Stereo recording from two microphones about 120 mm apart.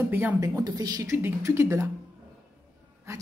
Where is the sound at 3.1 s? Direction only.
25° right (ahead or behind).